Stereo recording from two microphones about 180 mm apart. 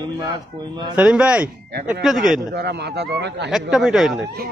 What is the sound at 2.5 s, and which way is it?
Speech, 65° right (ahead or behind).